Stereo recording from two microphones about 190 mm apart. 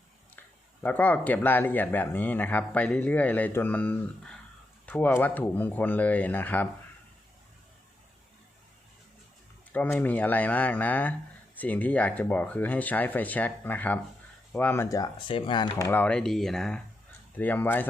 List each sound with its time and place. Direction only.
0.3 s speech: 10° left (ahead or behind)
9.7 s speech: 10° left (ahead or behind); by 15.7 s 25° left (ahead or behind)
15.8 s speech: 10° left (ahead or behind)